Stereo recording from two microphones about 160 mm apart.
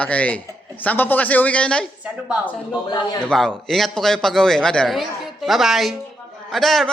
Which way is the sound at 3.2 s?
5° left (ahead or behind).